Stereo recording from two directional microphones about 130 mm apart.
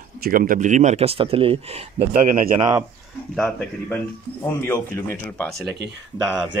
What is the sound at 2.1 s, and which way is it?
Speech, 90° right.